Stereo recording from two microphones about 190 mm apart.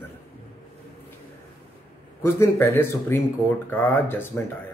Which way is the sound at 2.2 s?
15° left (ahead or behind).